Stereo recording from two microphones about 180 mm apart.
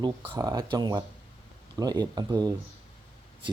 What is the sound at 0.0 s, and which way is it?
Speech, 20° right (ahead or behind).